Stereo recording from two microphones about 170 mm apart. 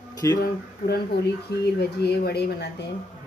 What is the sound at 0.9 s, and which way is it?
Speech, 75° left (ahead or behind).